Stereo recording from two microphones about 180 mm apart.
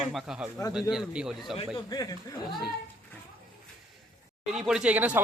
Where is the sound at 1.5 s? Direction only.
25° left (ahead or behind).